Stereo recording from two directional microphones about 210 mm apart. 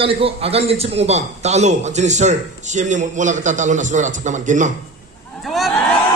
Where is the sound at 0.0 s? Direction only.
25° right (ahead or behind).